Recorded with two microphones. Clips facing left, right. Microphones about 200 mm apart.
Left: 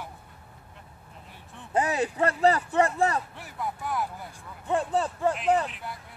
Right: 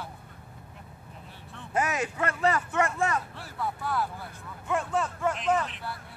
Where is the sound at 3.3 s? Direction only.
15° left (ahead or behind).